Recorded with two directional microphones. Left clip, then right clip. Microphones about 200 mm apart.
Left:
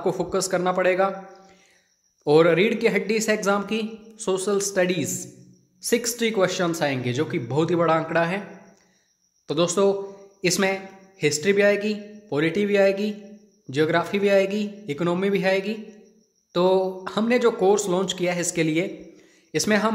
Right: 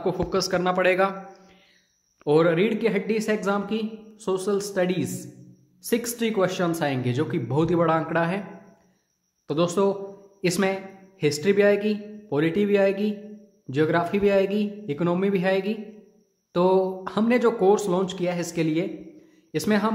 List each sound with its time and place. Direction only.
0.0 s a man's voice: 10° left (ahead or behind)
9.5 s a man's voice: 5° left (ahead or behind)